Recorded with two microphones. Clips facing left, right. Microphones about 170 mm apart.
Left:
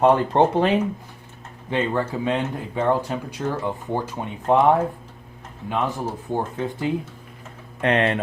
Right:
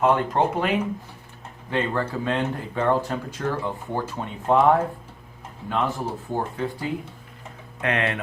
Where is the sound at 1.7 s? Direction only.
15° left (ahead or behind).